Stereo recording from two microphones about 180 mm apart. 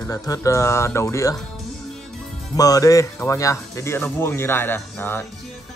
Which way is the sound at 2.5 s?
20° left (ahead or behind).